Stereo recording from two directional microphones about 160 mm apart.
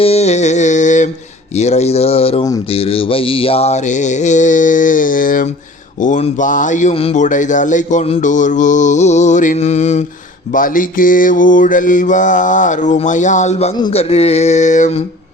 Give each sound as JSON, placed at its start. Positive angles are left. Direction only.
{"t": 0.0, "sound": "mantra", "side_deg": 40}
{"t": 1.5, "sound": "speech", "side_deg": 45}
{"t": 2.6, "sound": "mantra", "side_deg": 35}
{"t": 10.5, "sound": "mantra", "side_deg": 55}
{"t": 13.9, "sound": "speech", "side_deg": 40}